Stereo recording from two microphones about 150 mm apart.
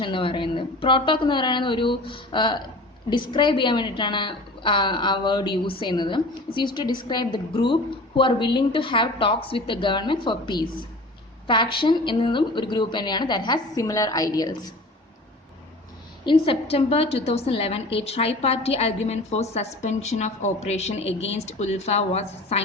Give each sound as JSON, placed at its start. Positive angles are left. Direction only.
{"t": 0.0, "sound": "a woman's voice", "side_deg": 35}
{"t": 16.2, "sound": "a woman's voice", "side_deg": 35}